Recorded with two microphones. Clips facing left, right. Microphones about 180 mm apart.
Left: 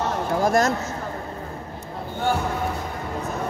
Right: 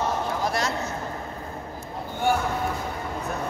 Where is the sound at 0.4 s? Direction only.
45° left (ahead or behind).